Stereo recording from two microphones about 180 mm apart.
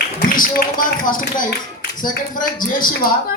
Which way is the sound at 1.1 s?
50° left (ahead or behind).